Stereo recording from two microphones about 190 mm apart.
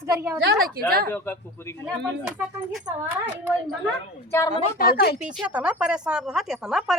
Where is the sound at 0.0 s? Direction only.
15° right (ahead or behind).